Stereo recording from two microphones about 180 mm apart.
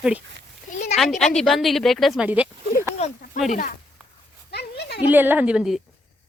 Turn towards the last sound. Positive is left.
turn(degrees=-5)  # may be behind; listen again after turning